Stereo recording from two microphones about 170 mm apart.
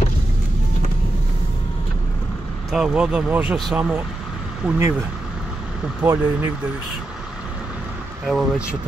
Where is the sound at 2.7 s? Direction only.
5° right (ahead or behind).